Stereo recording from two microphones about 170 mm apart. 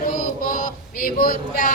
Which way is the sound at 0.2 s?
50° left (ahead or behind).